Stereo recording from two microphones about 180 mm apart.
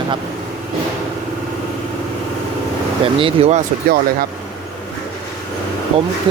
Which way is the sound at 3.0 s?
30° right (ahead or behind).